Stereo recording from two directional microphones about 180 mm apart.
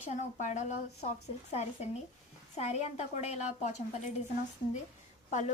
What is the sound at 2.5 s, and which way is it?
Speech, 40° left (ahead or behind).